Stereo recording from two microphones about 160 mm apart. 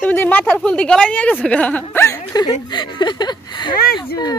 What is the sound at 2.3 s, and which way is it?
Speech, 25° left (ahead or behind).